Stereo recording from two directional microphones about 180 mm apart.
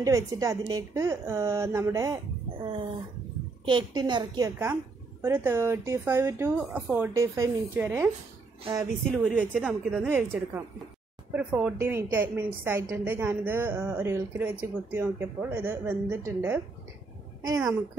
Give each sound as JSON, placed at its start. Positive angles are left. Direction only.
{"t": 0.0, "sound": "a woman's voice", "side_deg": -20}
{"t": 3.6, "sound": "a woman's voice", "side_deg": -25}
{"t": 9.2, "sound": "a woman's voice", "side_deg": -10}